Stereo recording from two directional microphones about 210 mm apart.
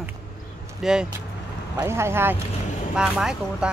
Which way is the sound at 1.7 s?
15° right (ahead or behind).